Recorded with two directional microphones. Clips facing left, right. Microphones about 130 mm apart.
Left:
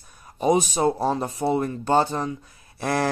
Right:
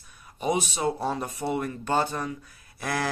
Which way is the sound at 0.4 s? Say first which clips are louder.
Left 6 dB; 40° left (ahead or behind).